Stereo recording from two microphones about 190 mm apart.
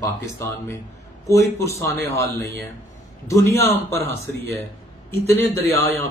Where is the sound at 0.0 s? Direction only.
15° left (ahead or behind).